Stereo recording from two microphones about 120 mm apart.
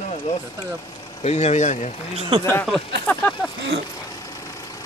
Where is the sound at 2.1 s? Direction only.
50° right (ahead or behind).